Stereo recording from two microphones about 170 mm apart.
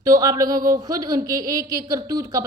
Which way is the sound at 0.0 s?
20° right (ahead or behind).